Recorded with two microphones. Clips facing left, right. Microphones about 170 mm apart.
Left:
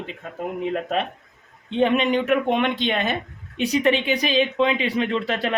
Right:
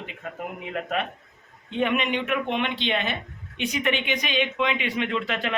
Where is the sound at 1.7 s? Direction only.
30° left (ahead or behind).